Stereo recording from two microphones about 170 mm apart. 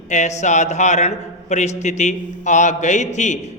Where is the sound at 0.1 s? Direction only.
45° left (ahead or behind).